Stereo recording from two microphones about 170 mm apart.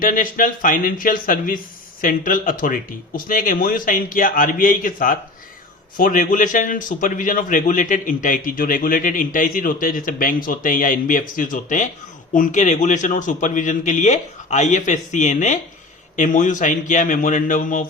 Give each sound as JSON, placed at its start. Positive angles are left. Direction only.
{"t": 0.0, "sound": "a man's voice", "side_deg": 55}